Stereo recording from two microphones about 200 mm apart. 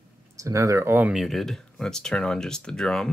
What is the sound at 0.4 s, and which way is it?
Speech, 15° right (ahead or behind).